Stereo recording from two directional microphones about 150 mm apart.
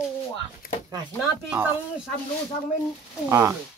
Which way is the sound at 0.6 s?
70° left (ahead or behind).